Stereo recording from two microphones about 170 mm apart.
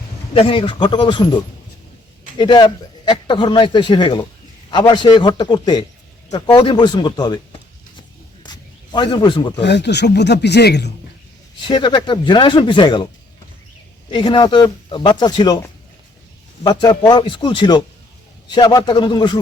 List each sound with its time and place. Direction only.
0.3 s speech: 30° left (ahead or behind)
2.4 s speech: 25° left (ahead or behind)
8.4 s a sound: 25° left (ahead or behind)
9.6 s speech: 90° left
11.6 s speech: 25° left (ahead or behind)
14.1 s speech: 25° left (ahead or behind)
16.6 s speech: 25° left (ahead or behind)